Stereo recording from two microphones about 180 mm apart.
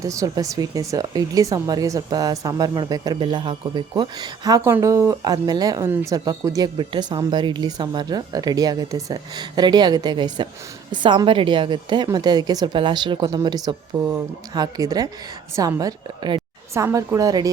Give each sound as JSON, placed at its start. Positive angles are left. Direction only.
{"t": 0.0, "sound": "speech", "side_deg": -20}